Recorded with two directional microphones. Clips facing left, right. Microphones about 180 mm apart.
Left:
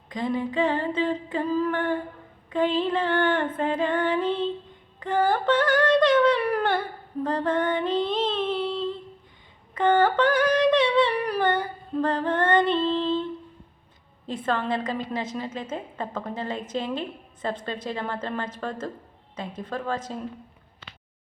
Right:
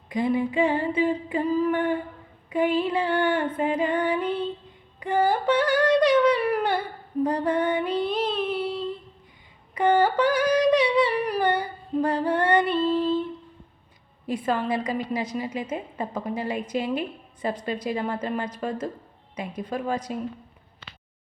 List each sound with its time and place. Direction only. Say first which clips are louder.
0.1 s a sound: right 3 dB; 15° right (ahead or behind)
4.2 s child singing: left 1 dB; 25° left (ahead or behind)
4.9 s humming: right 1 dB; 15° right (ahead or behind)
7.9 s child singing: left 1 dB; 25° left (ahead or behind)
9.7 s yodeling: even; 10° right (ahead or behind)
10.2 s yodeling: even; 50° left (ahead or behind)
10.7 s humming: even; 10° right (ahead or behind)
11.6 s female singing: right 1 dB; 15° right (ahead or behind)
14.4 s a sound: even; 10° right (ahead or behind)
16.7 s a woman's voice: right 2 dB; 10° right (ahead or behind)
17.8 s a sound: right 3 dB; 10° right (ahead or behind)